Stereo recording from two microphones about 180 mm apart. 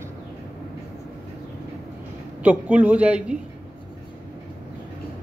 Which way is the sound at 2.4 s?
10° right (ahead or behind).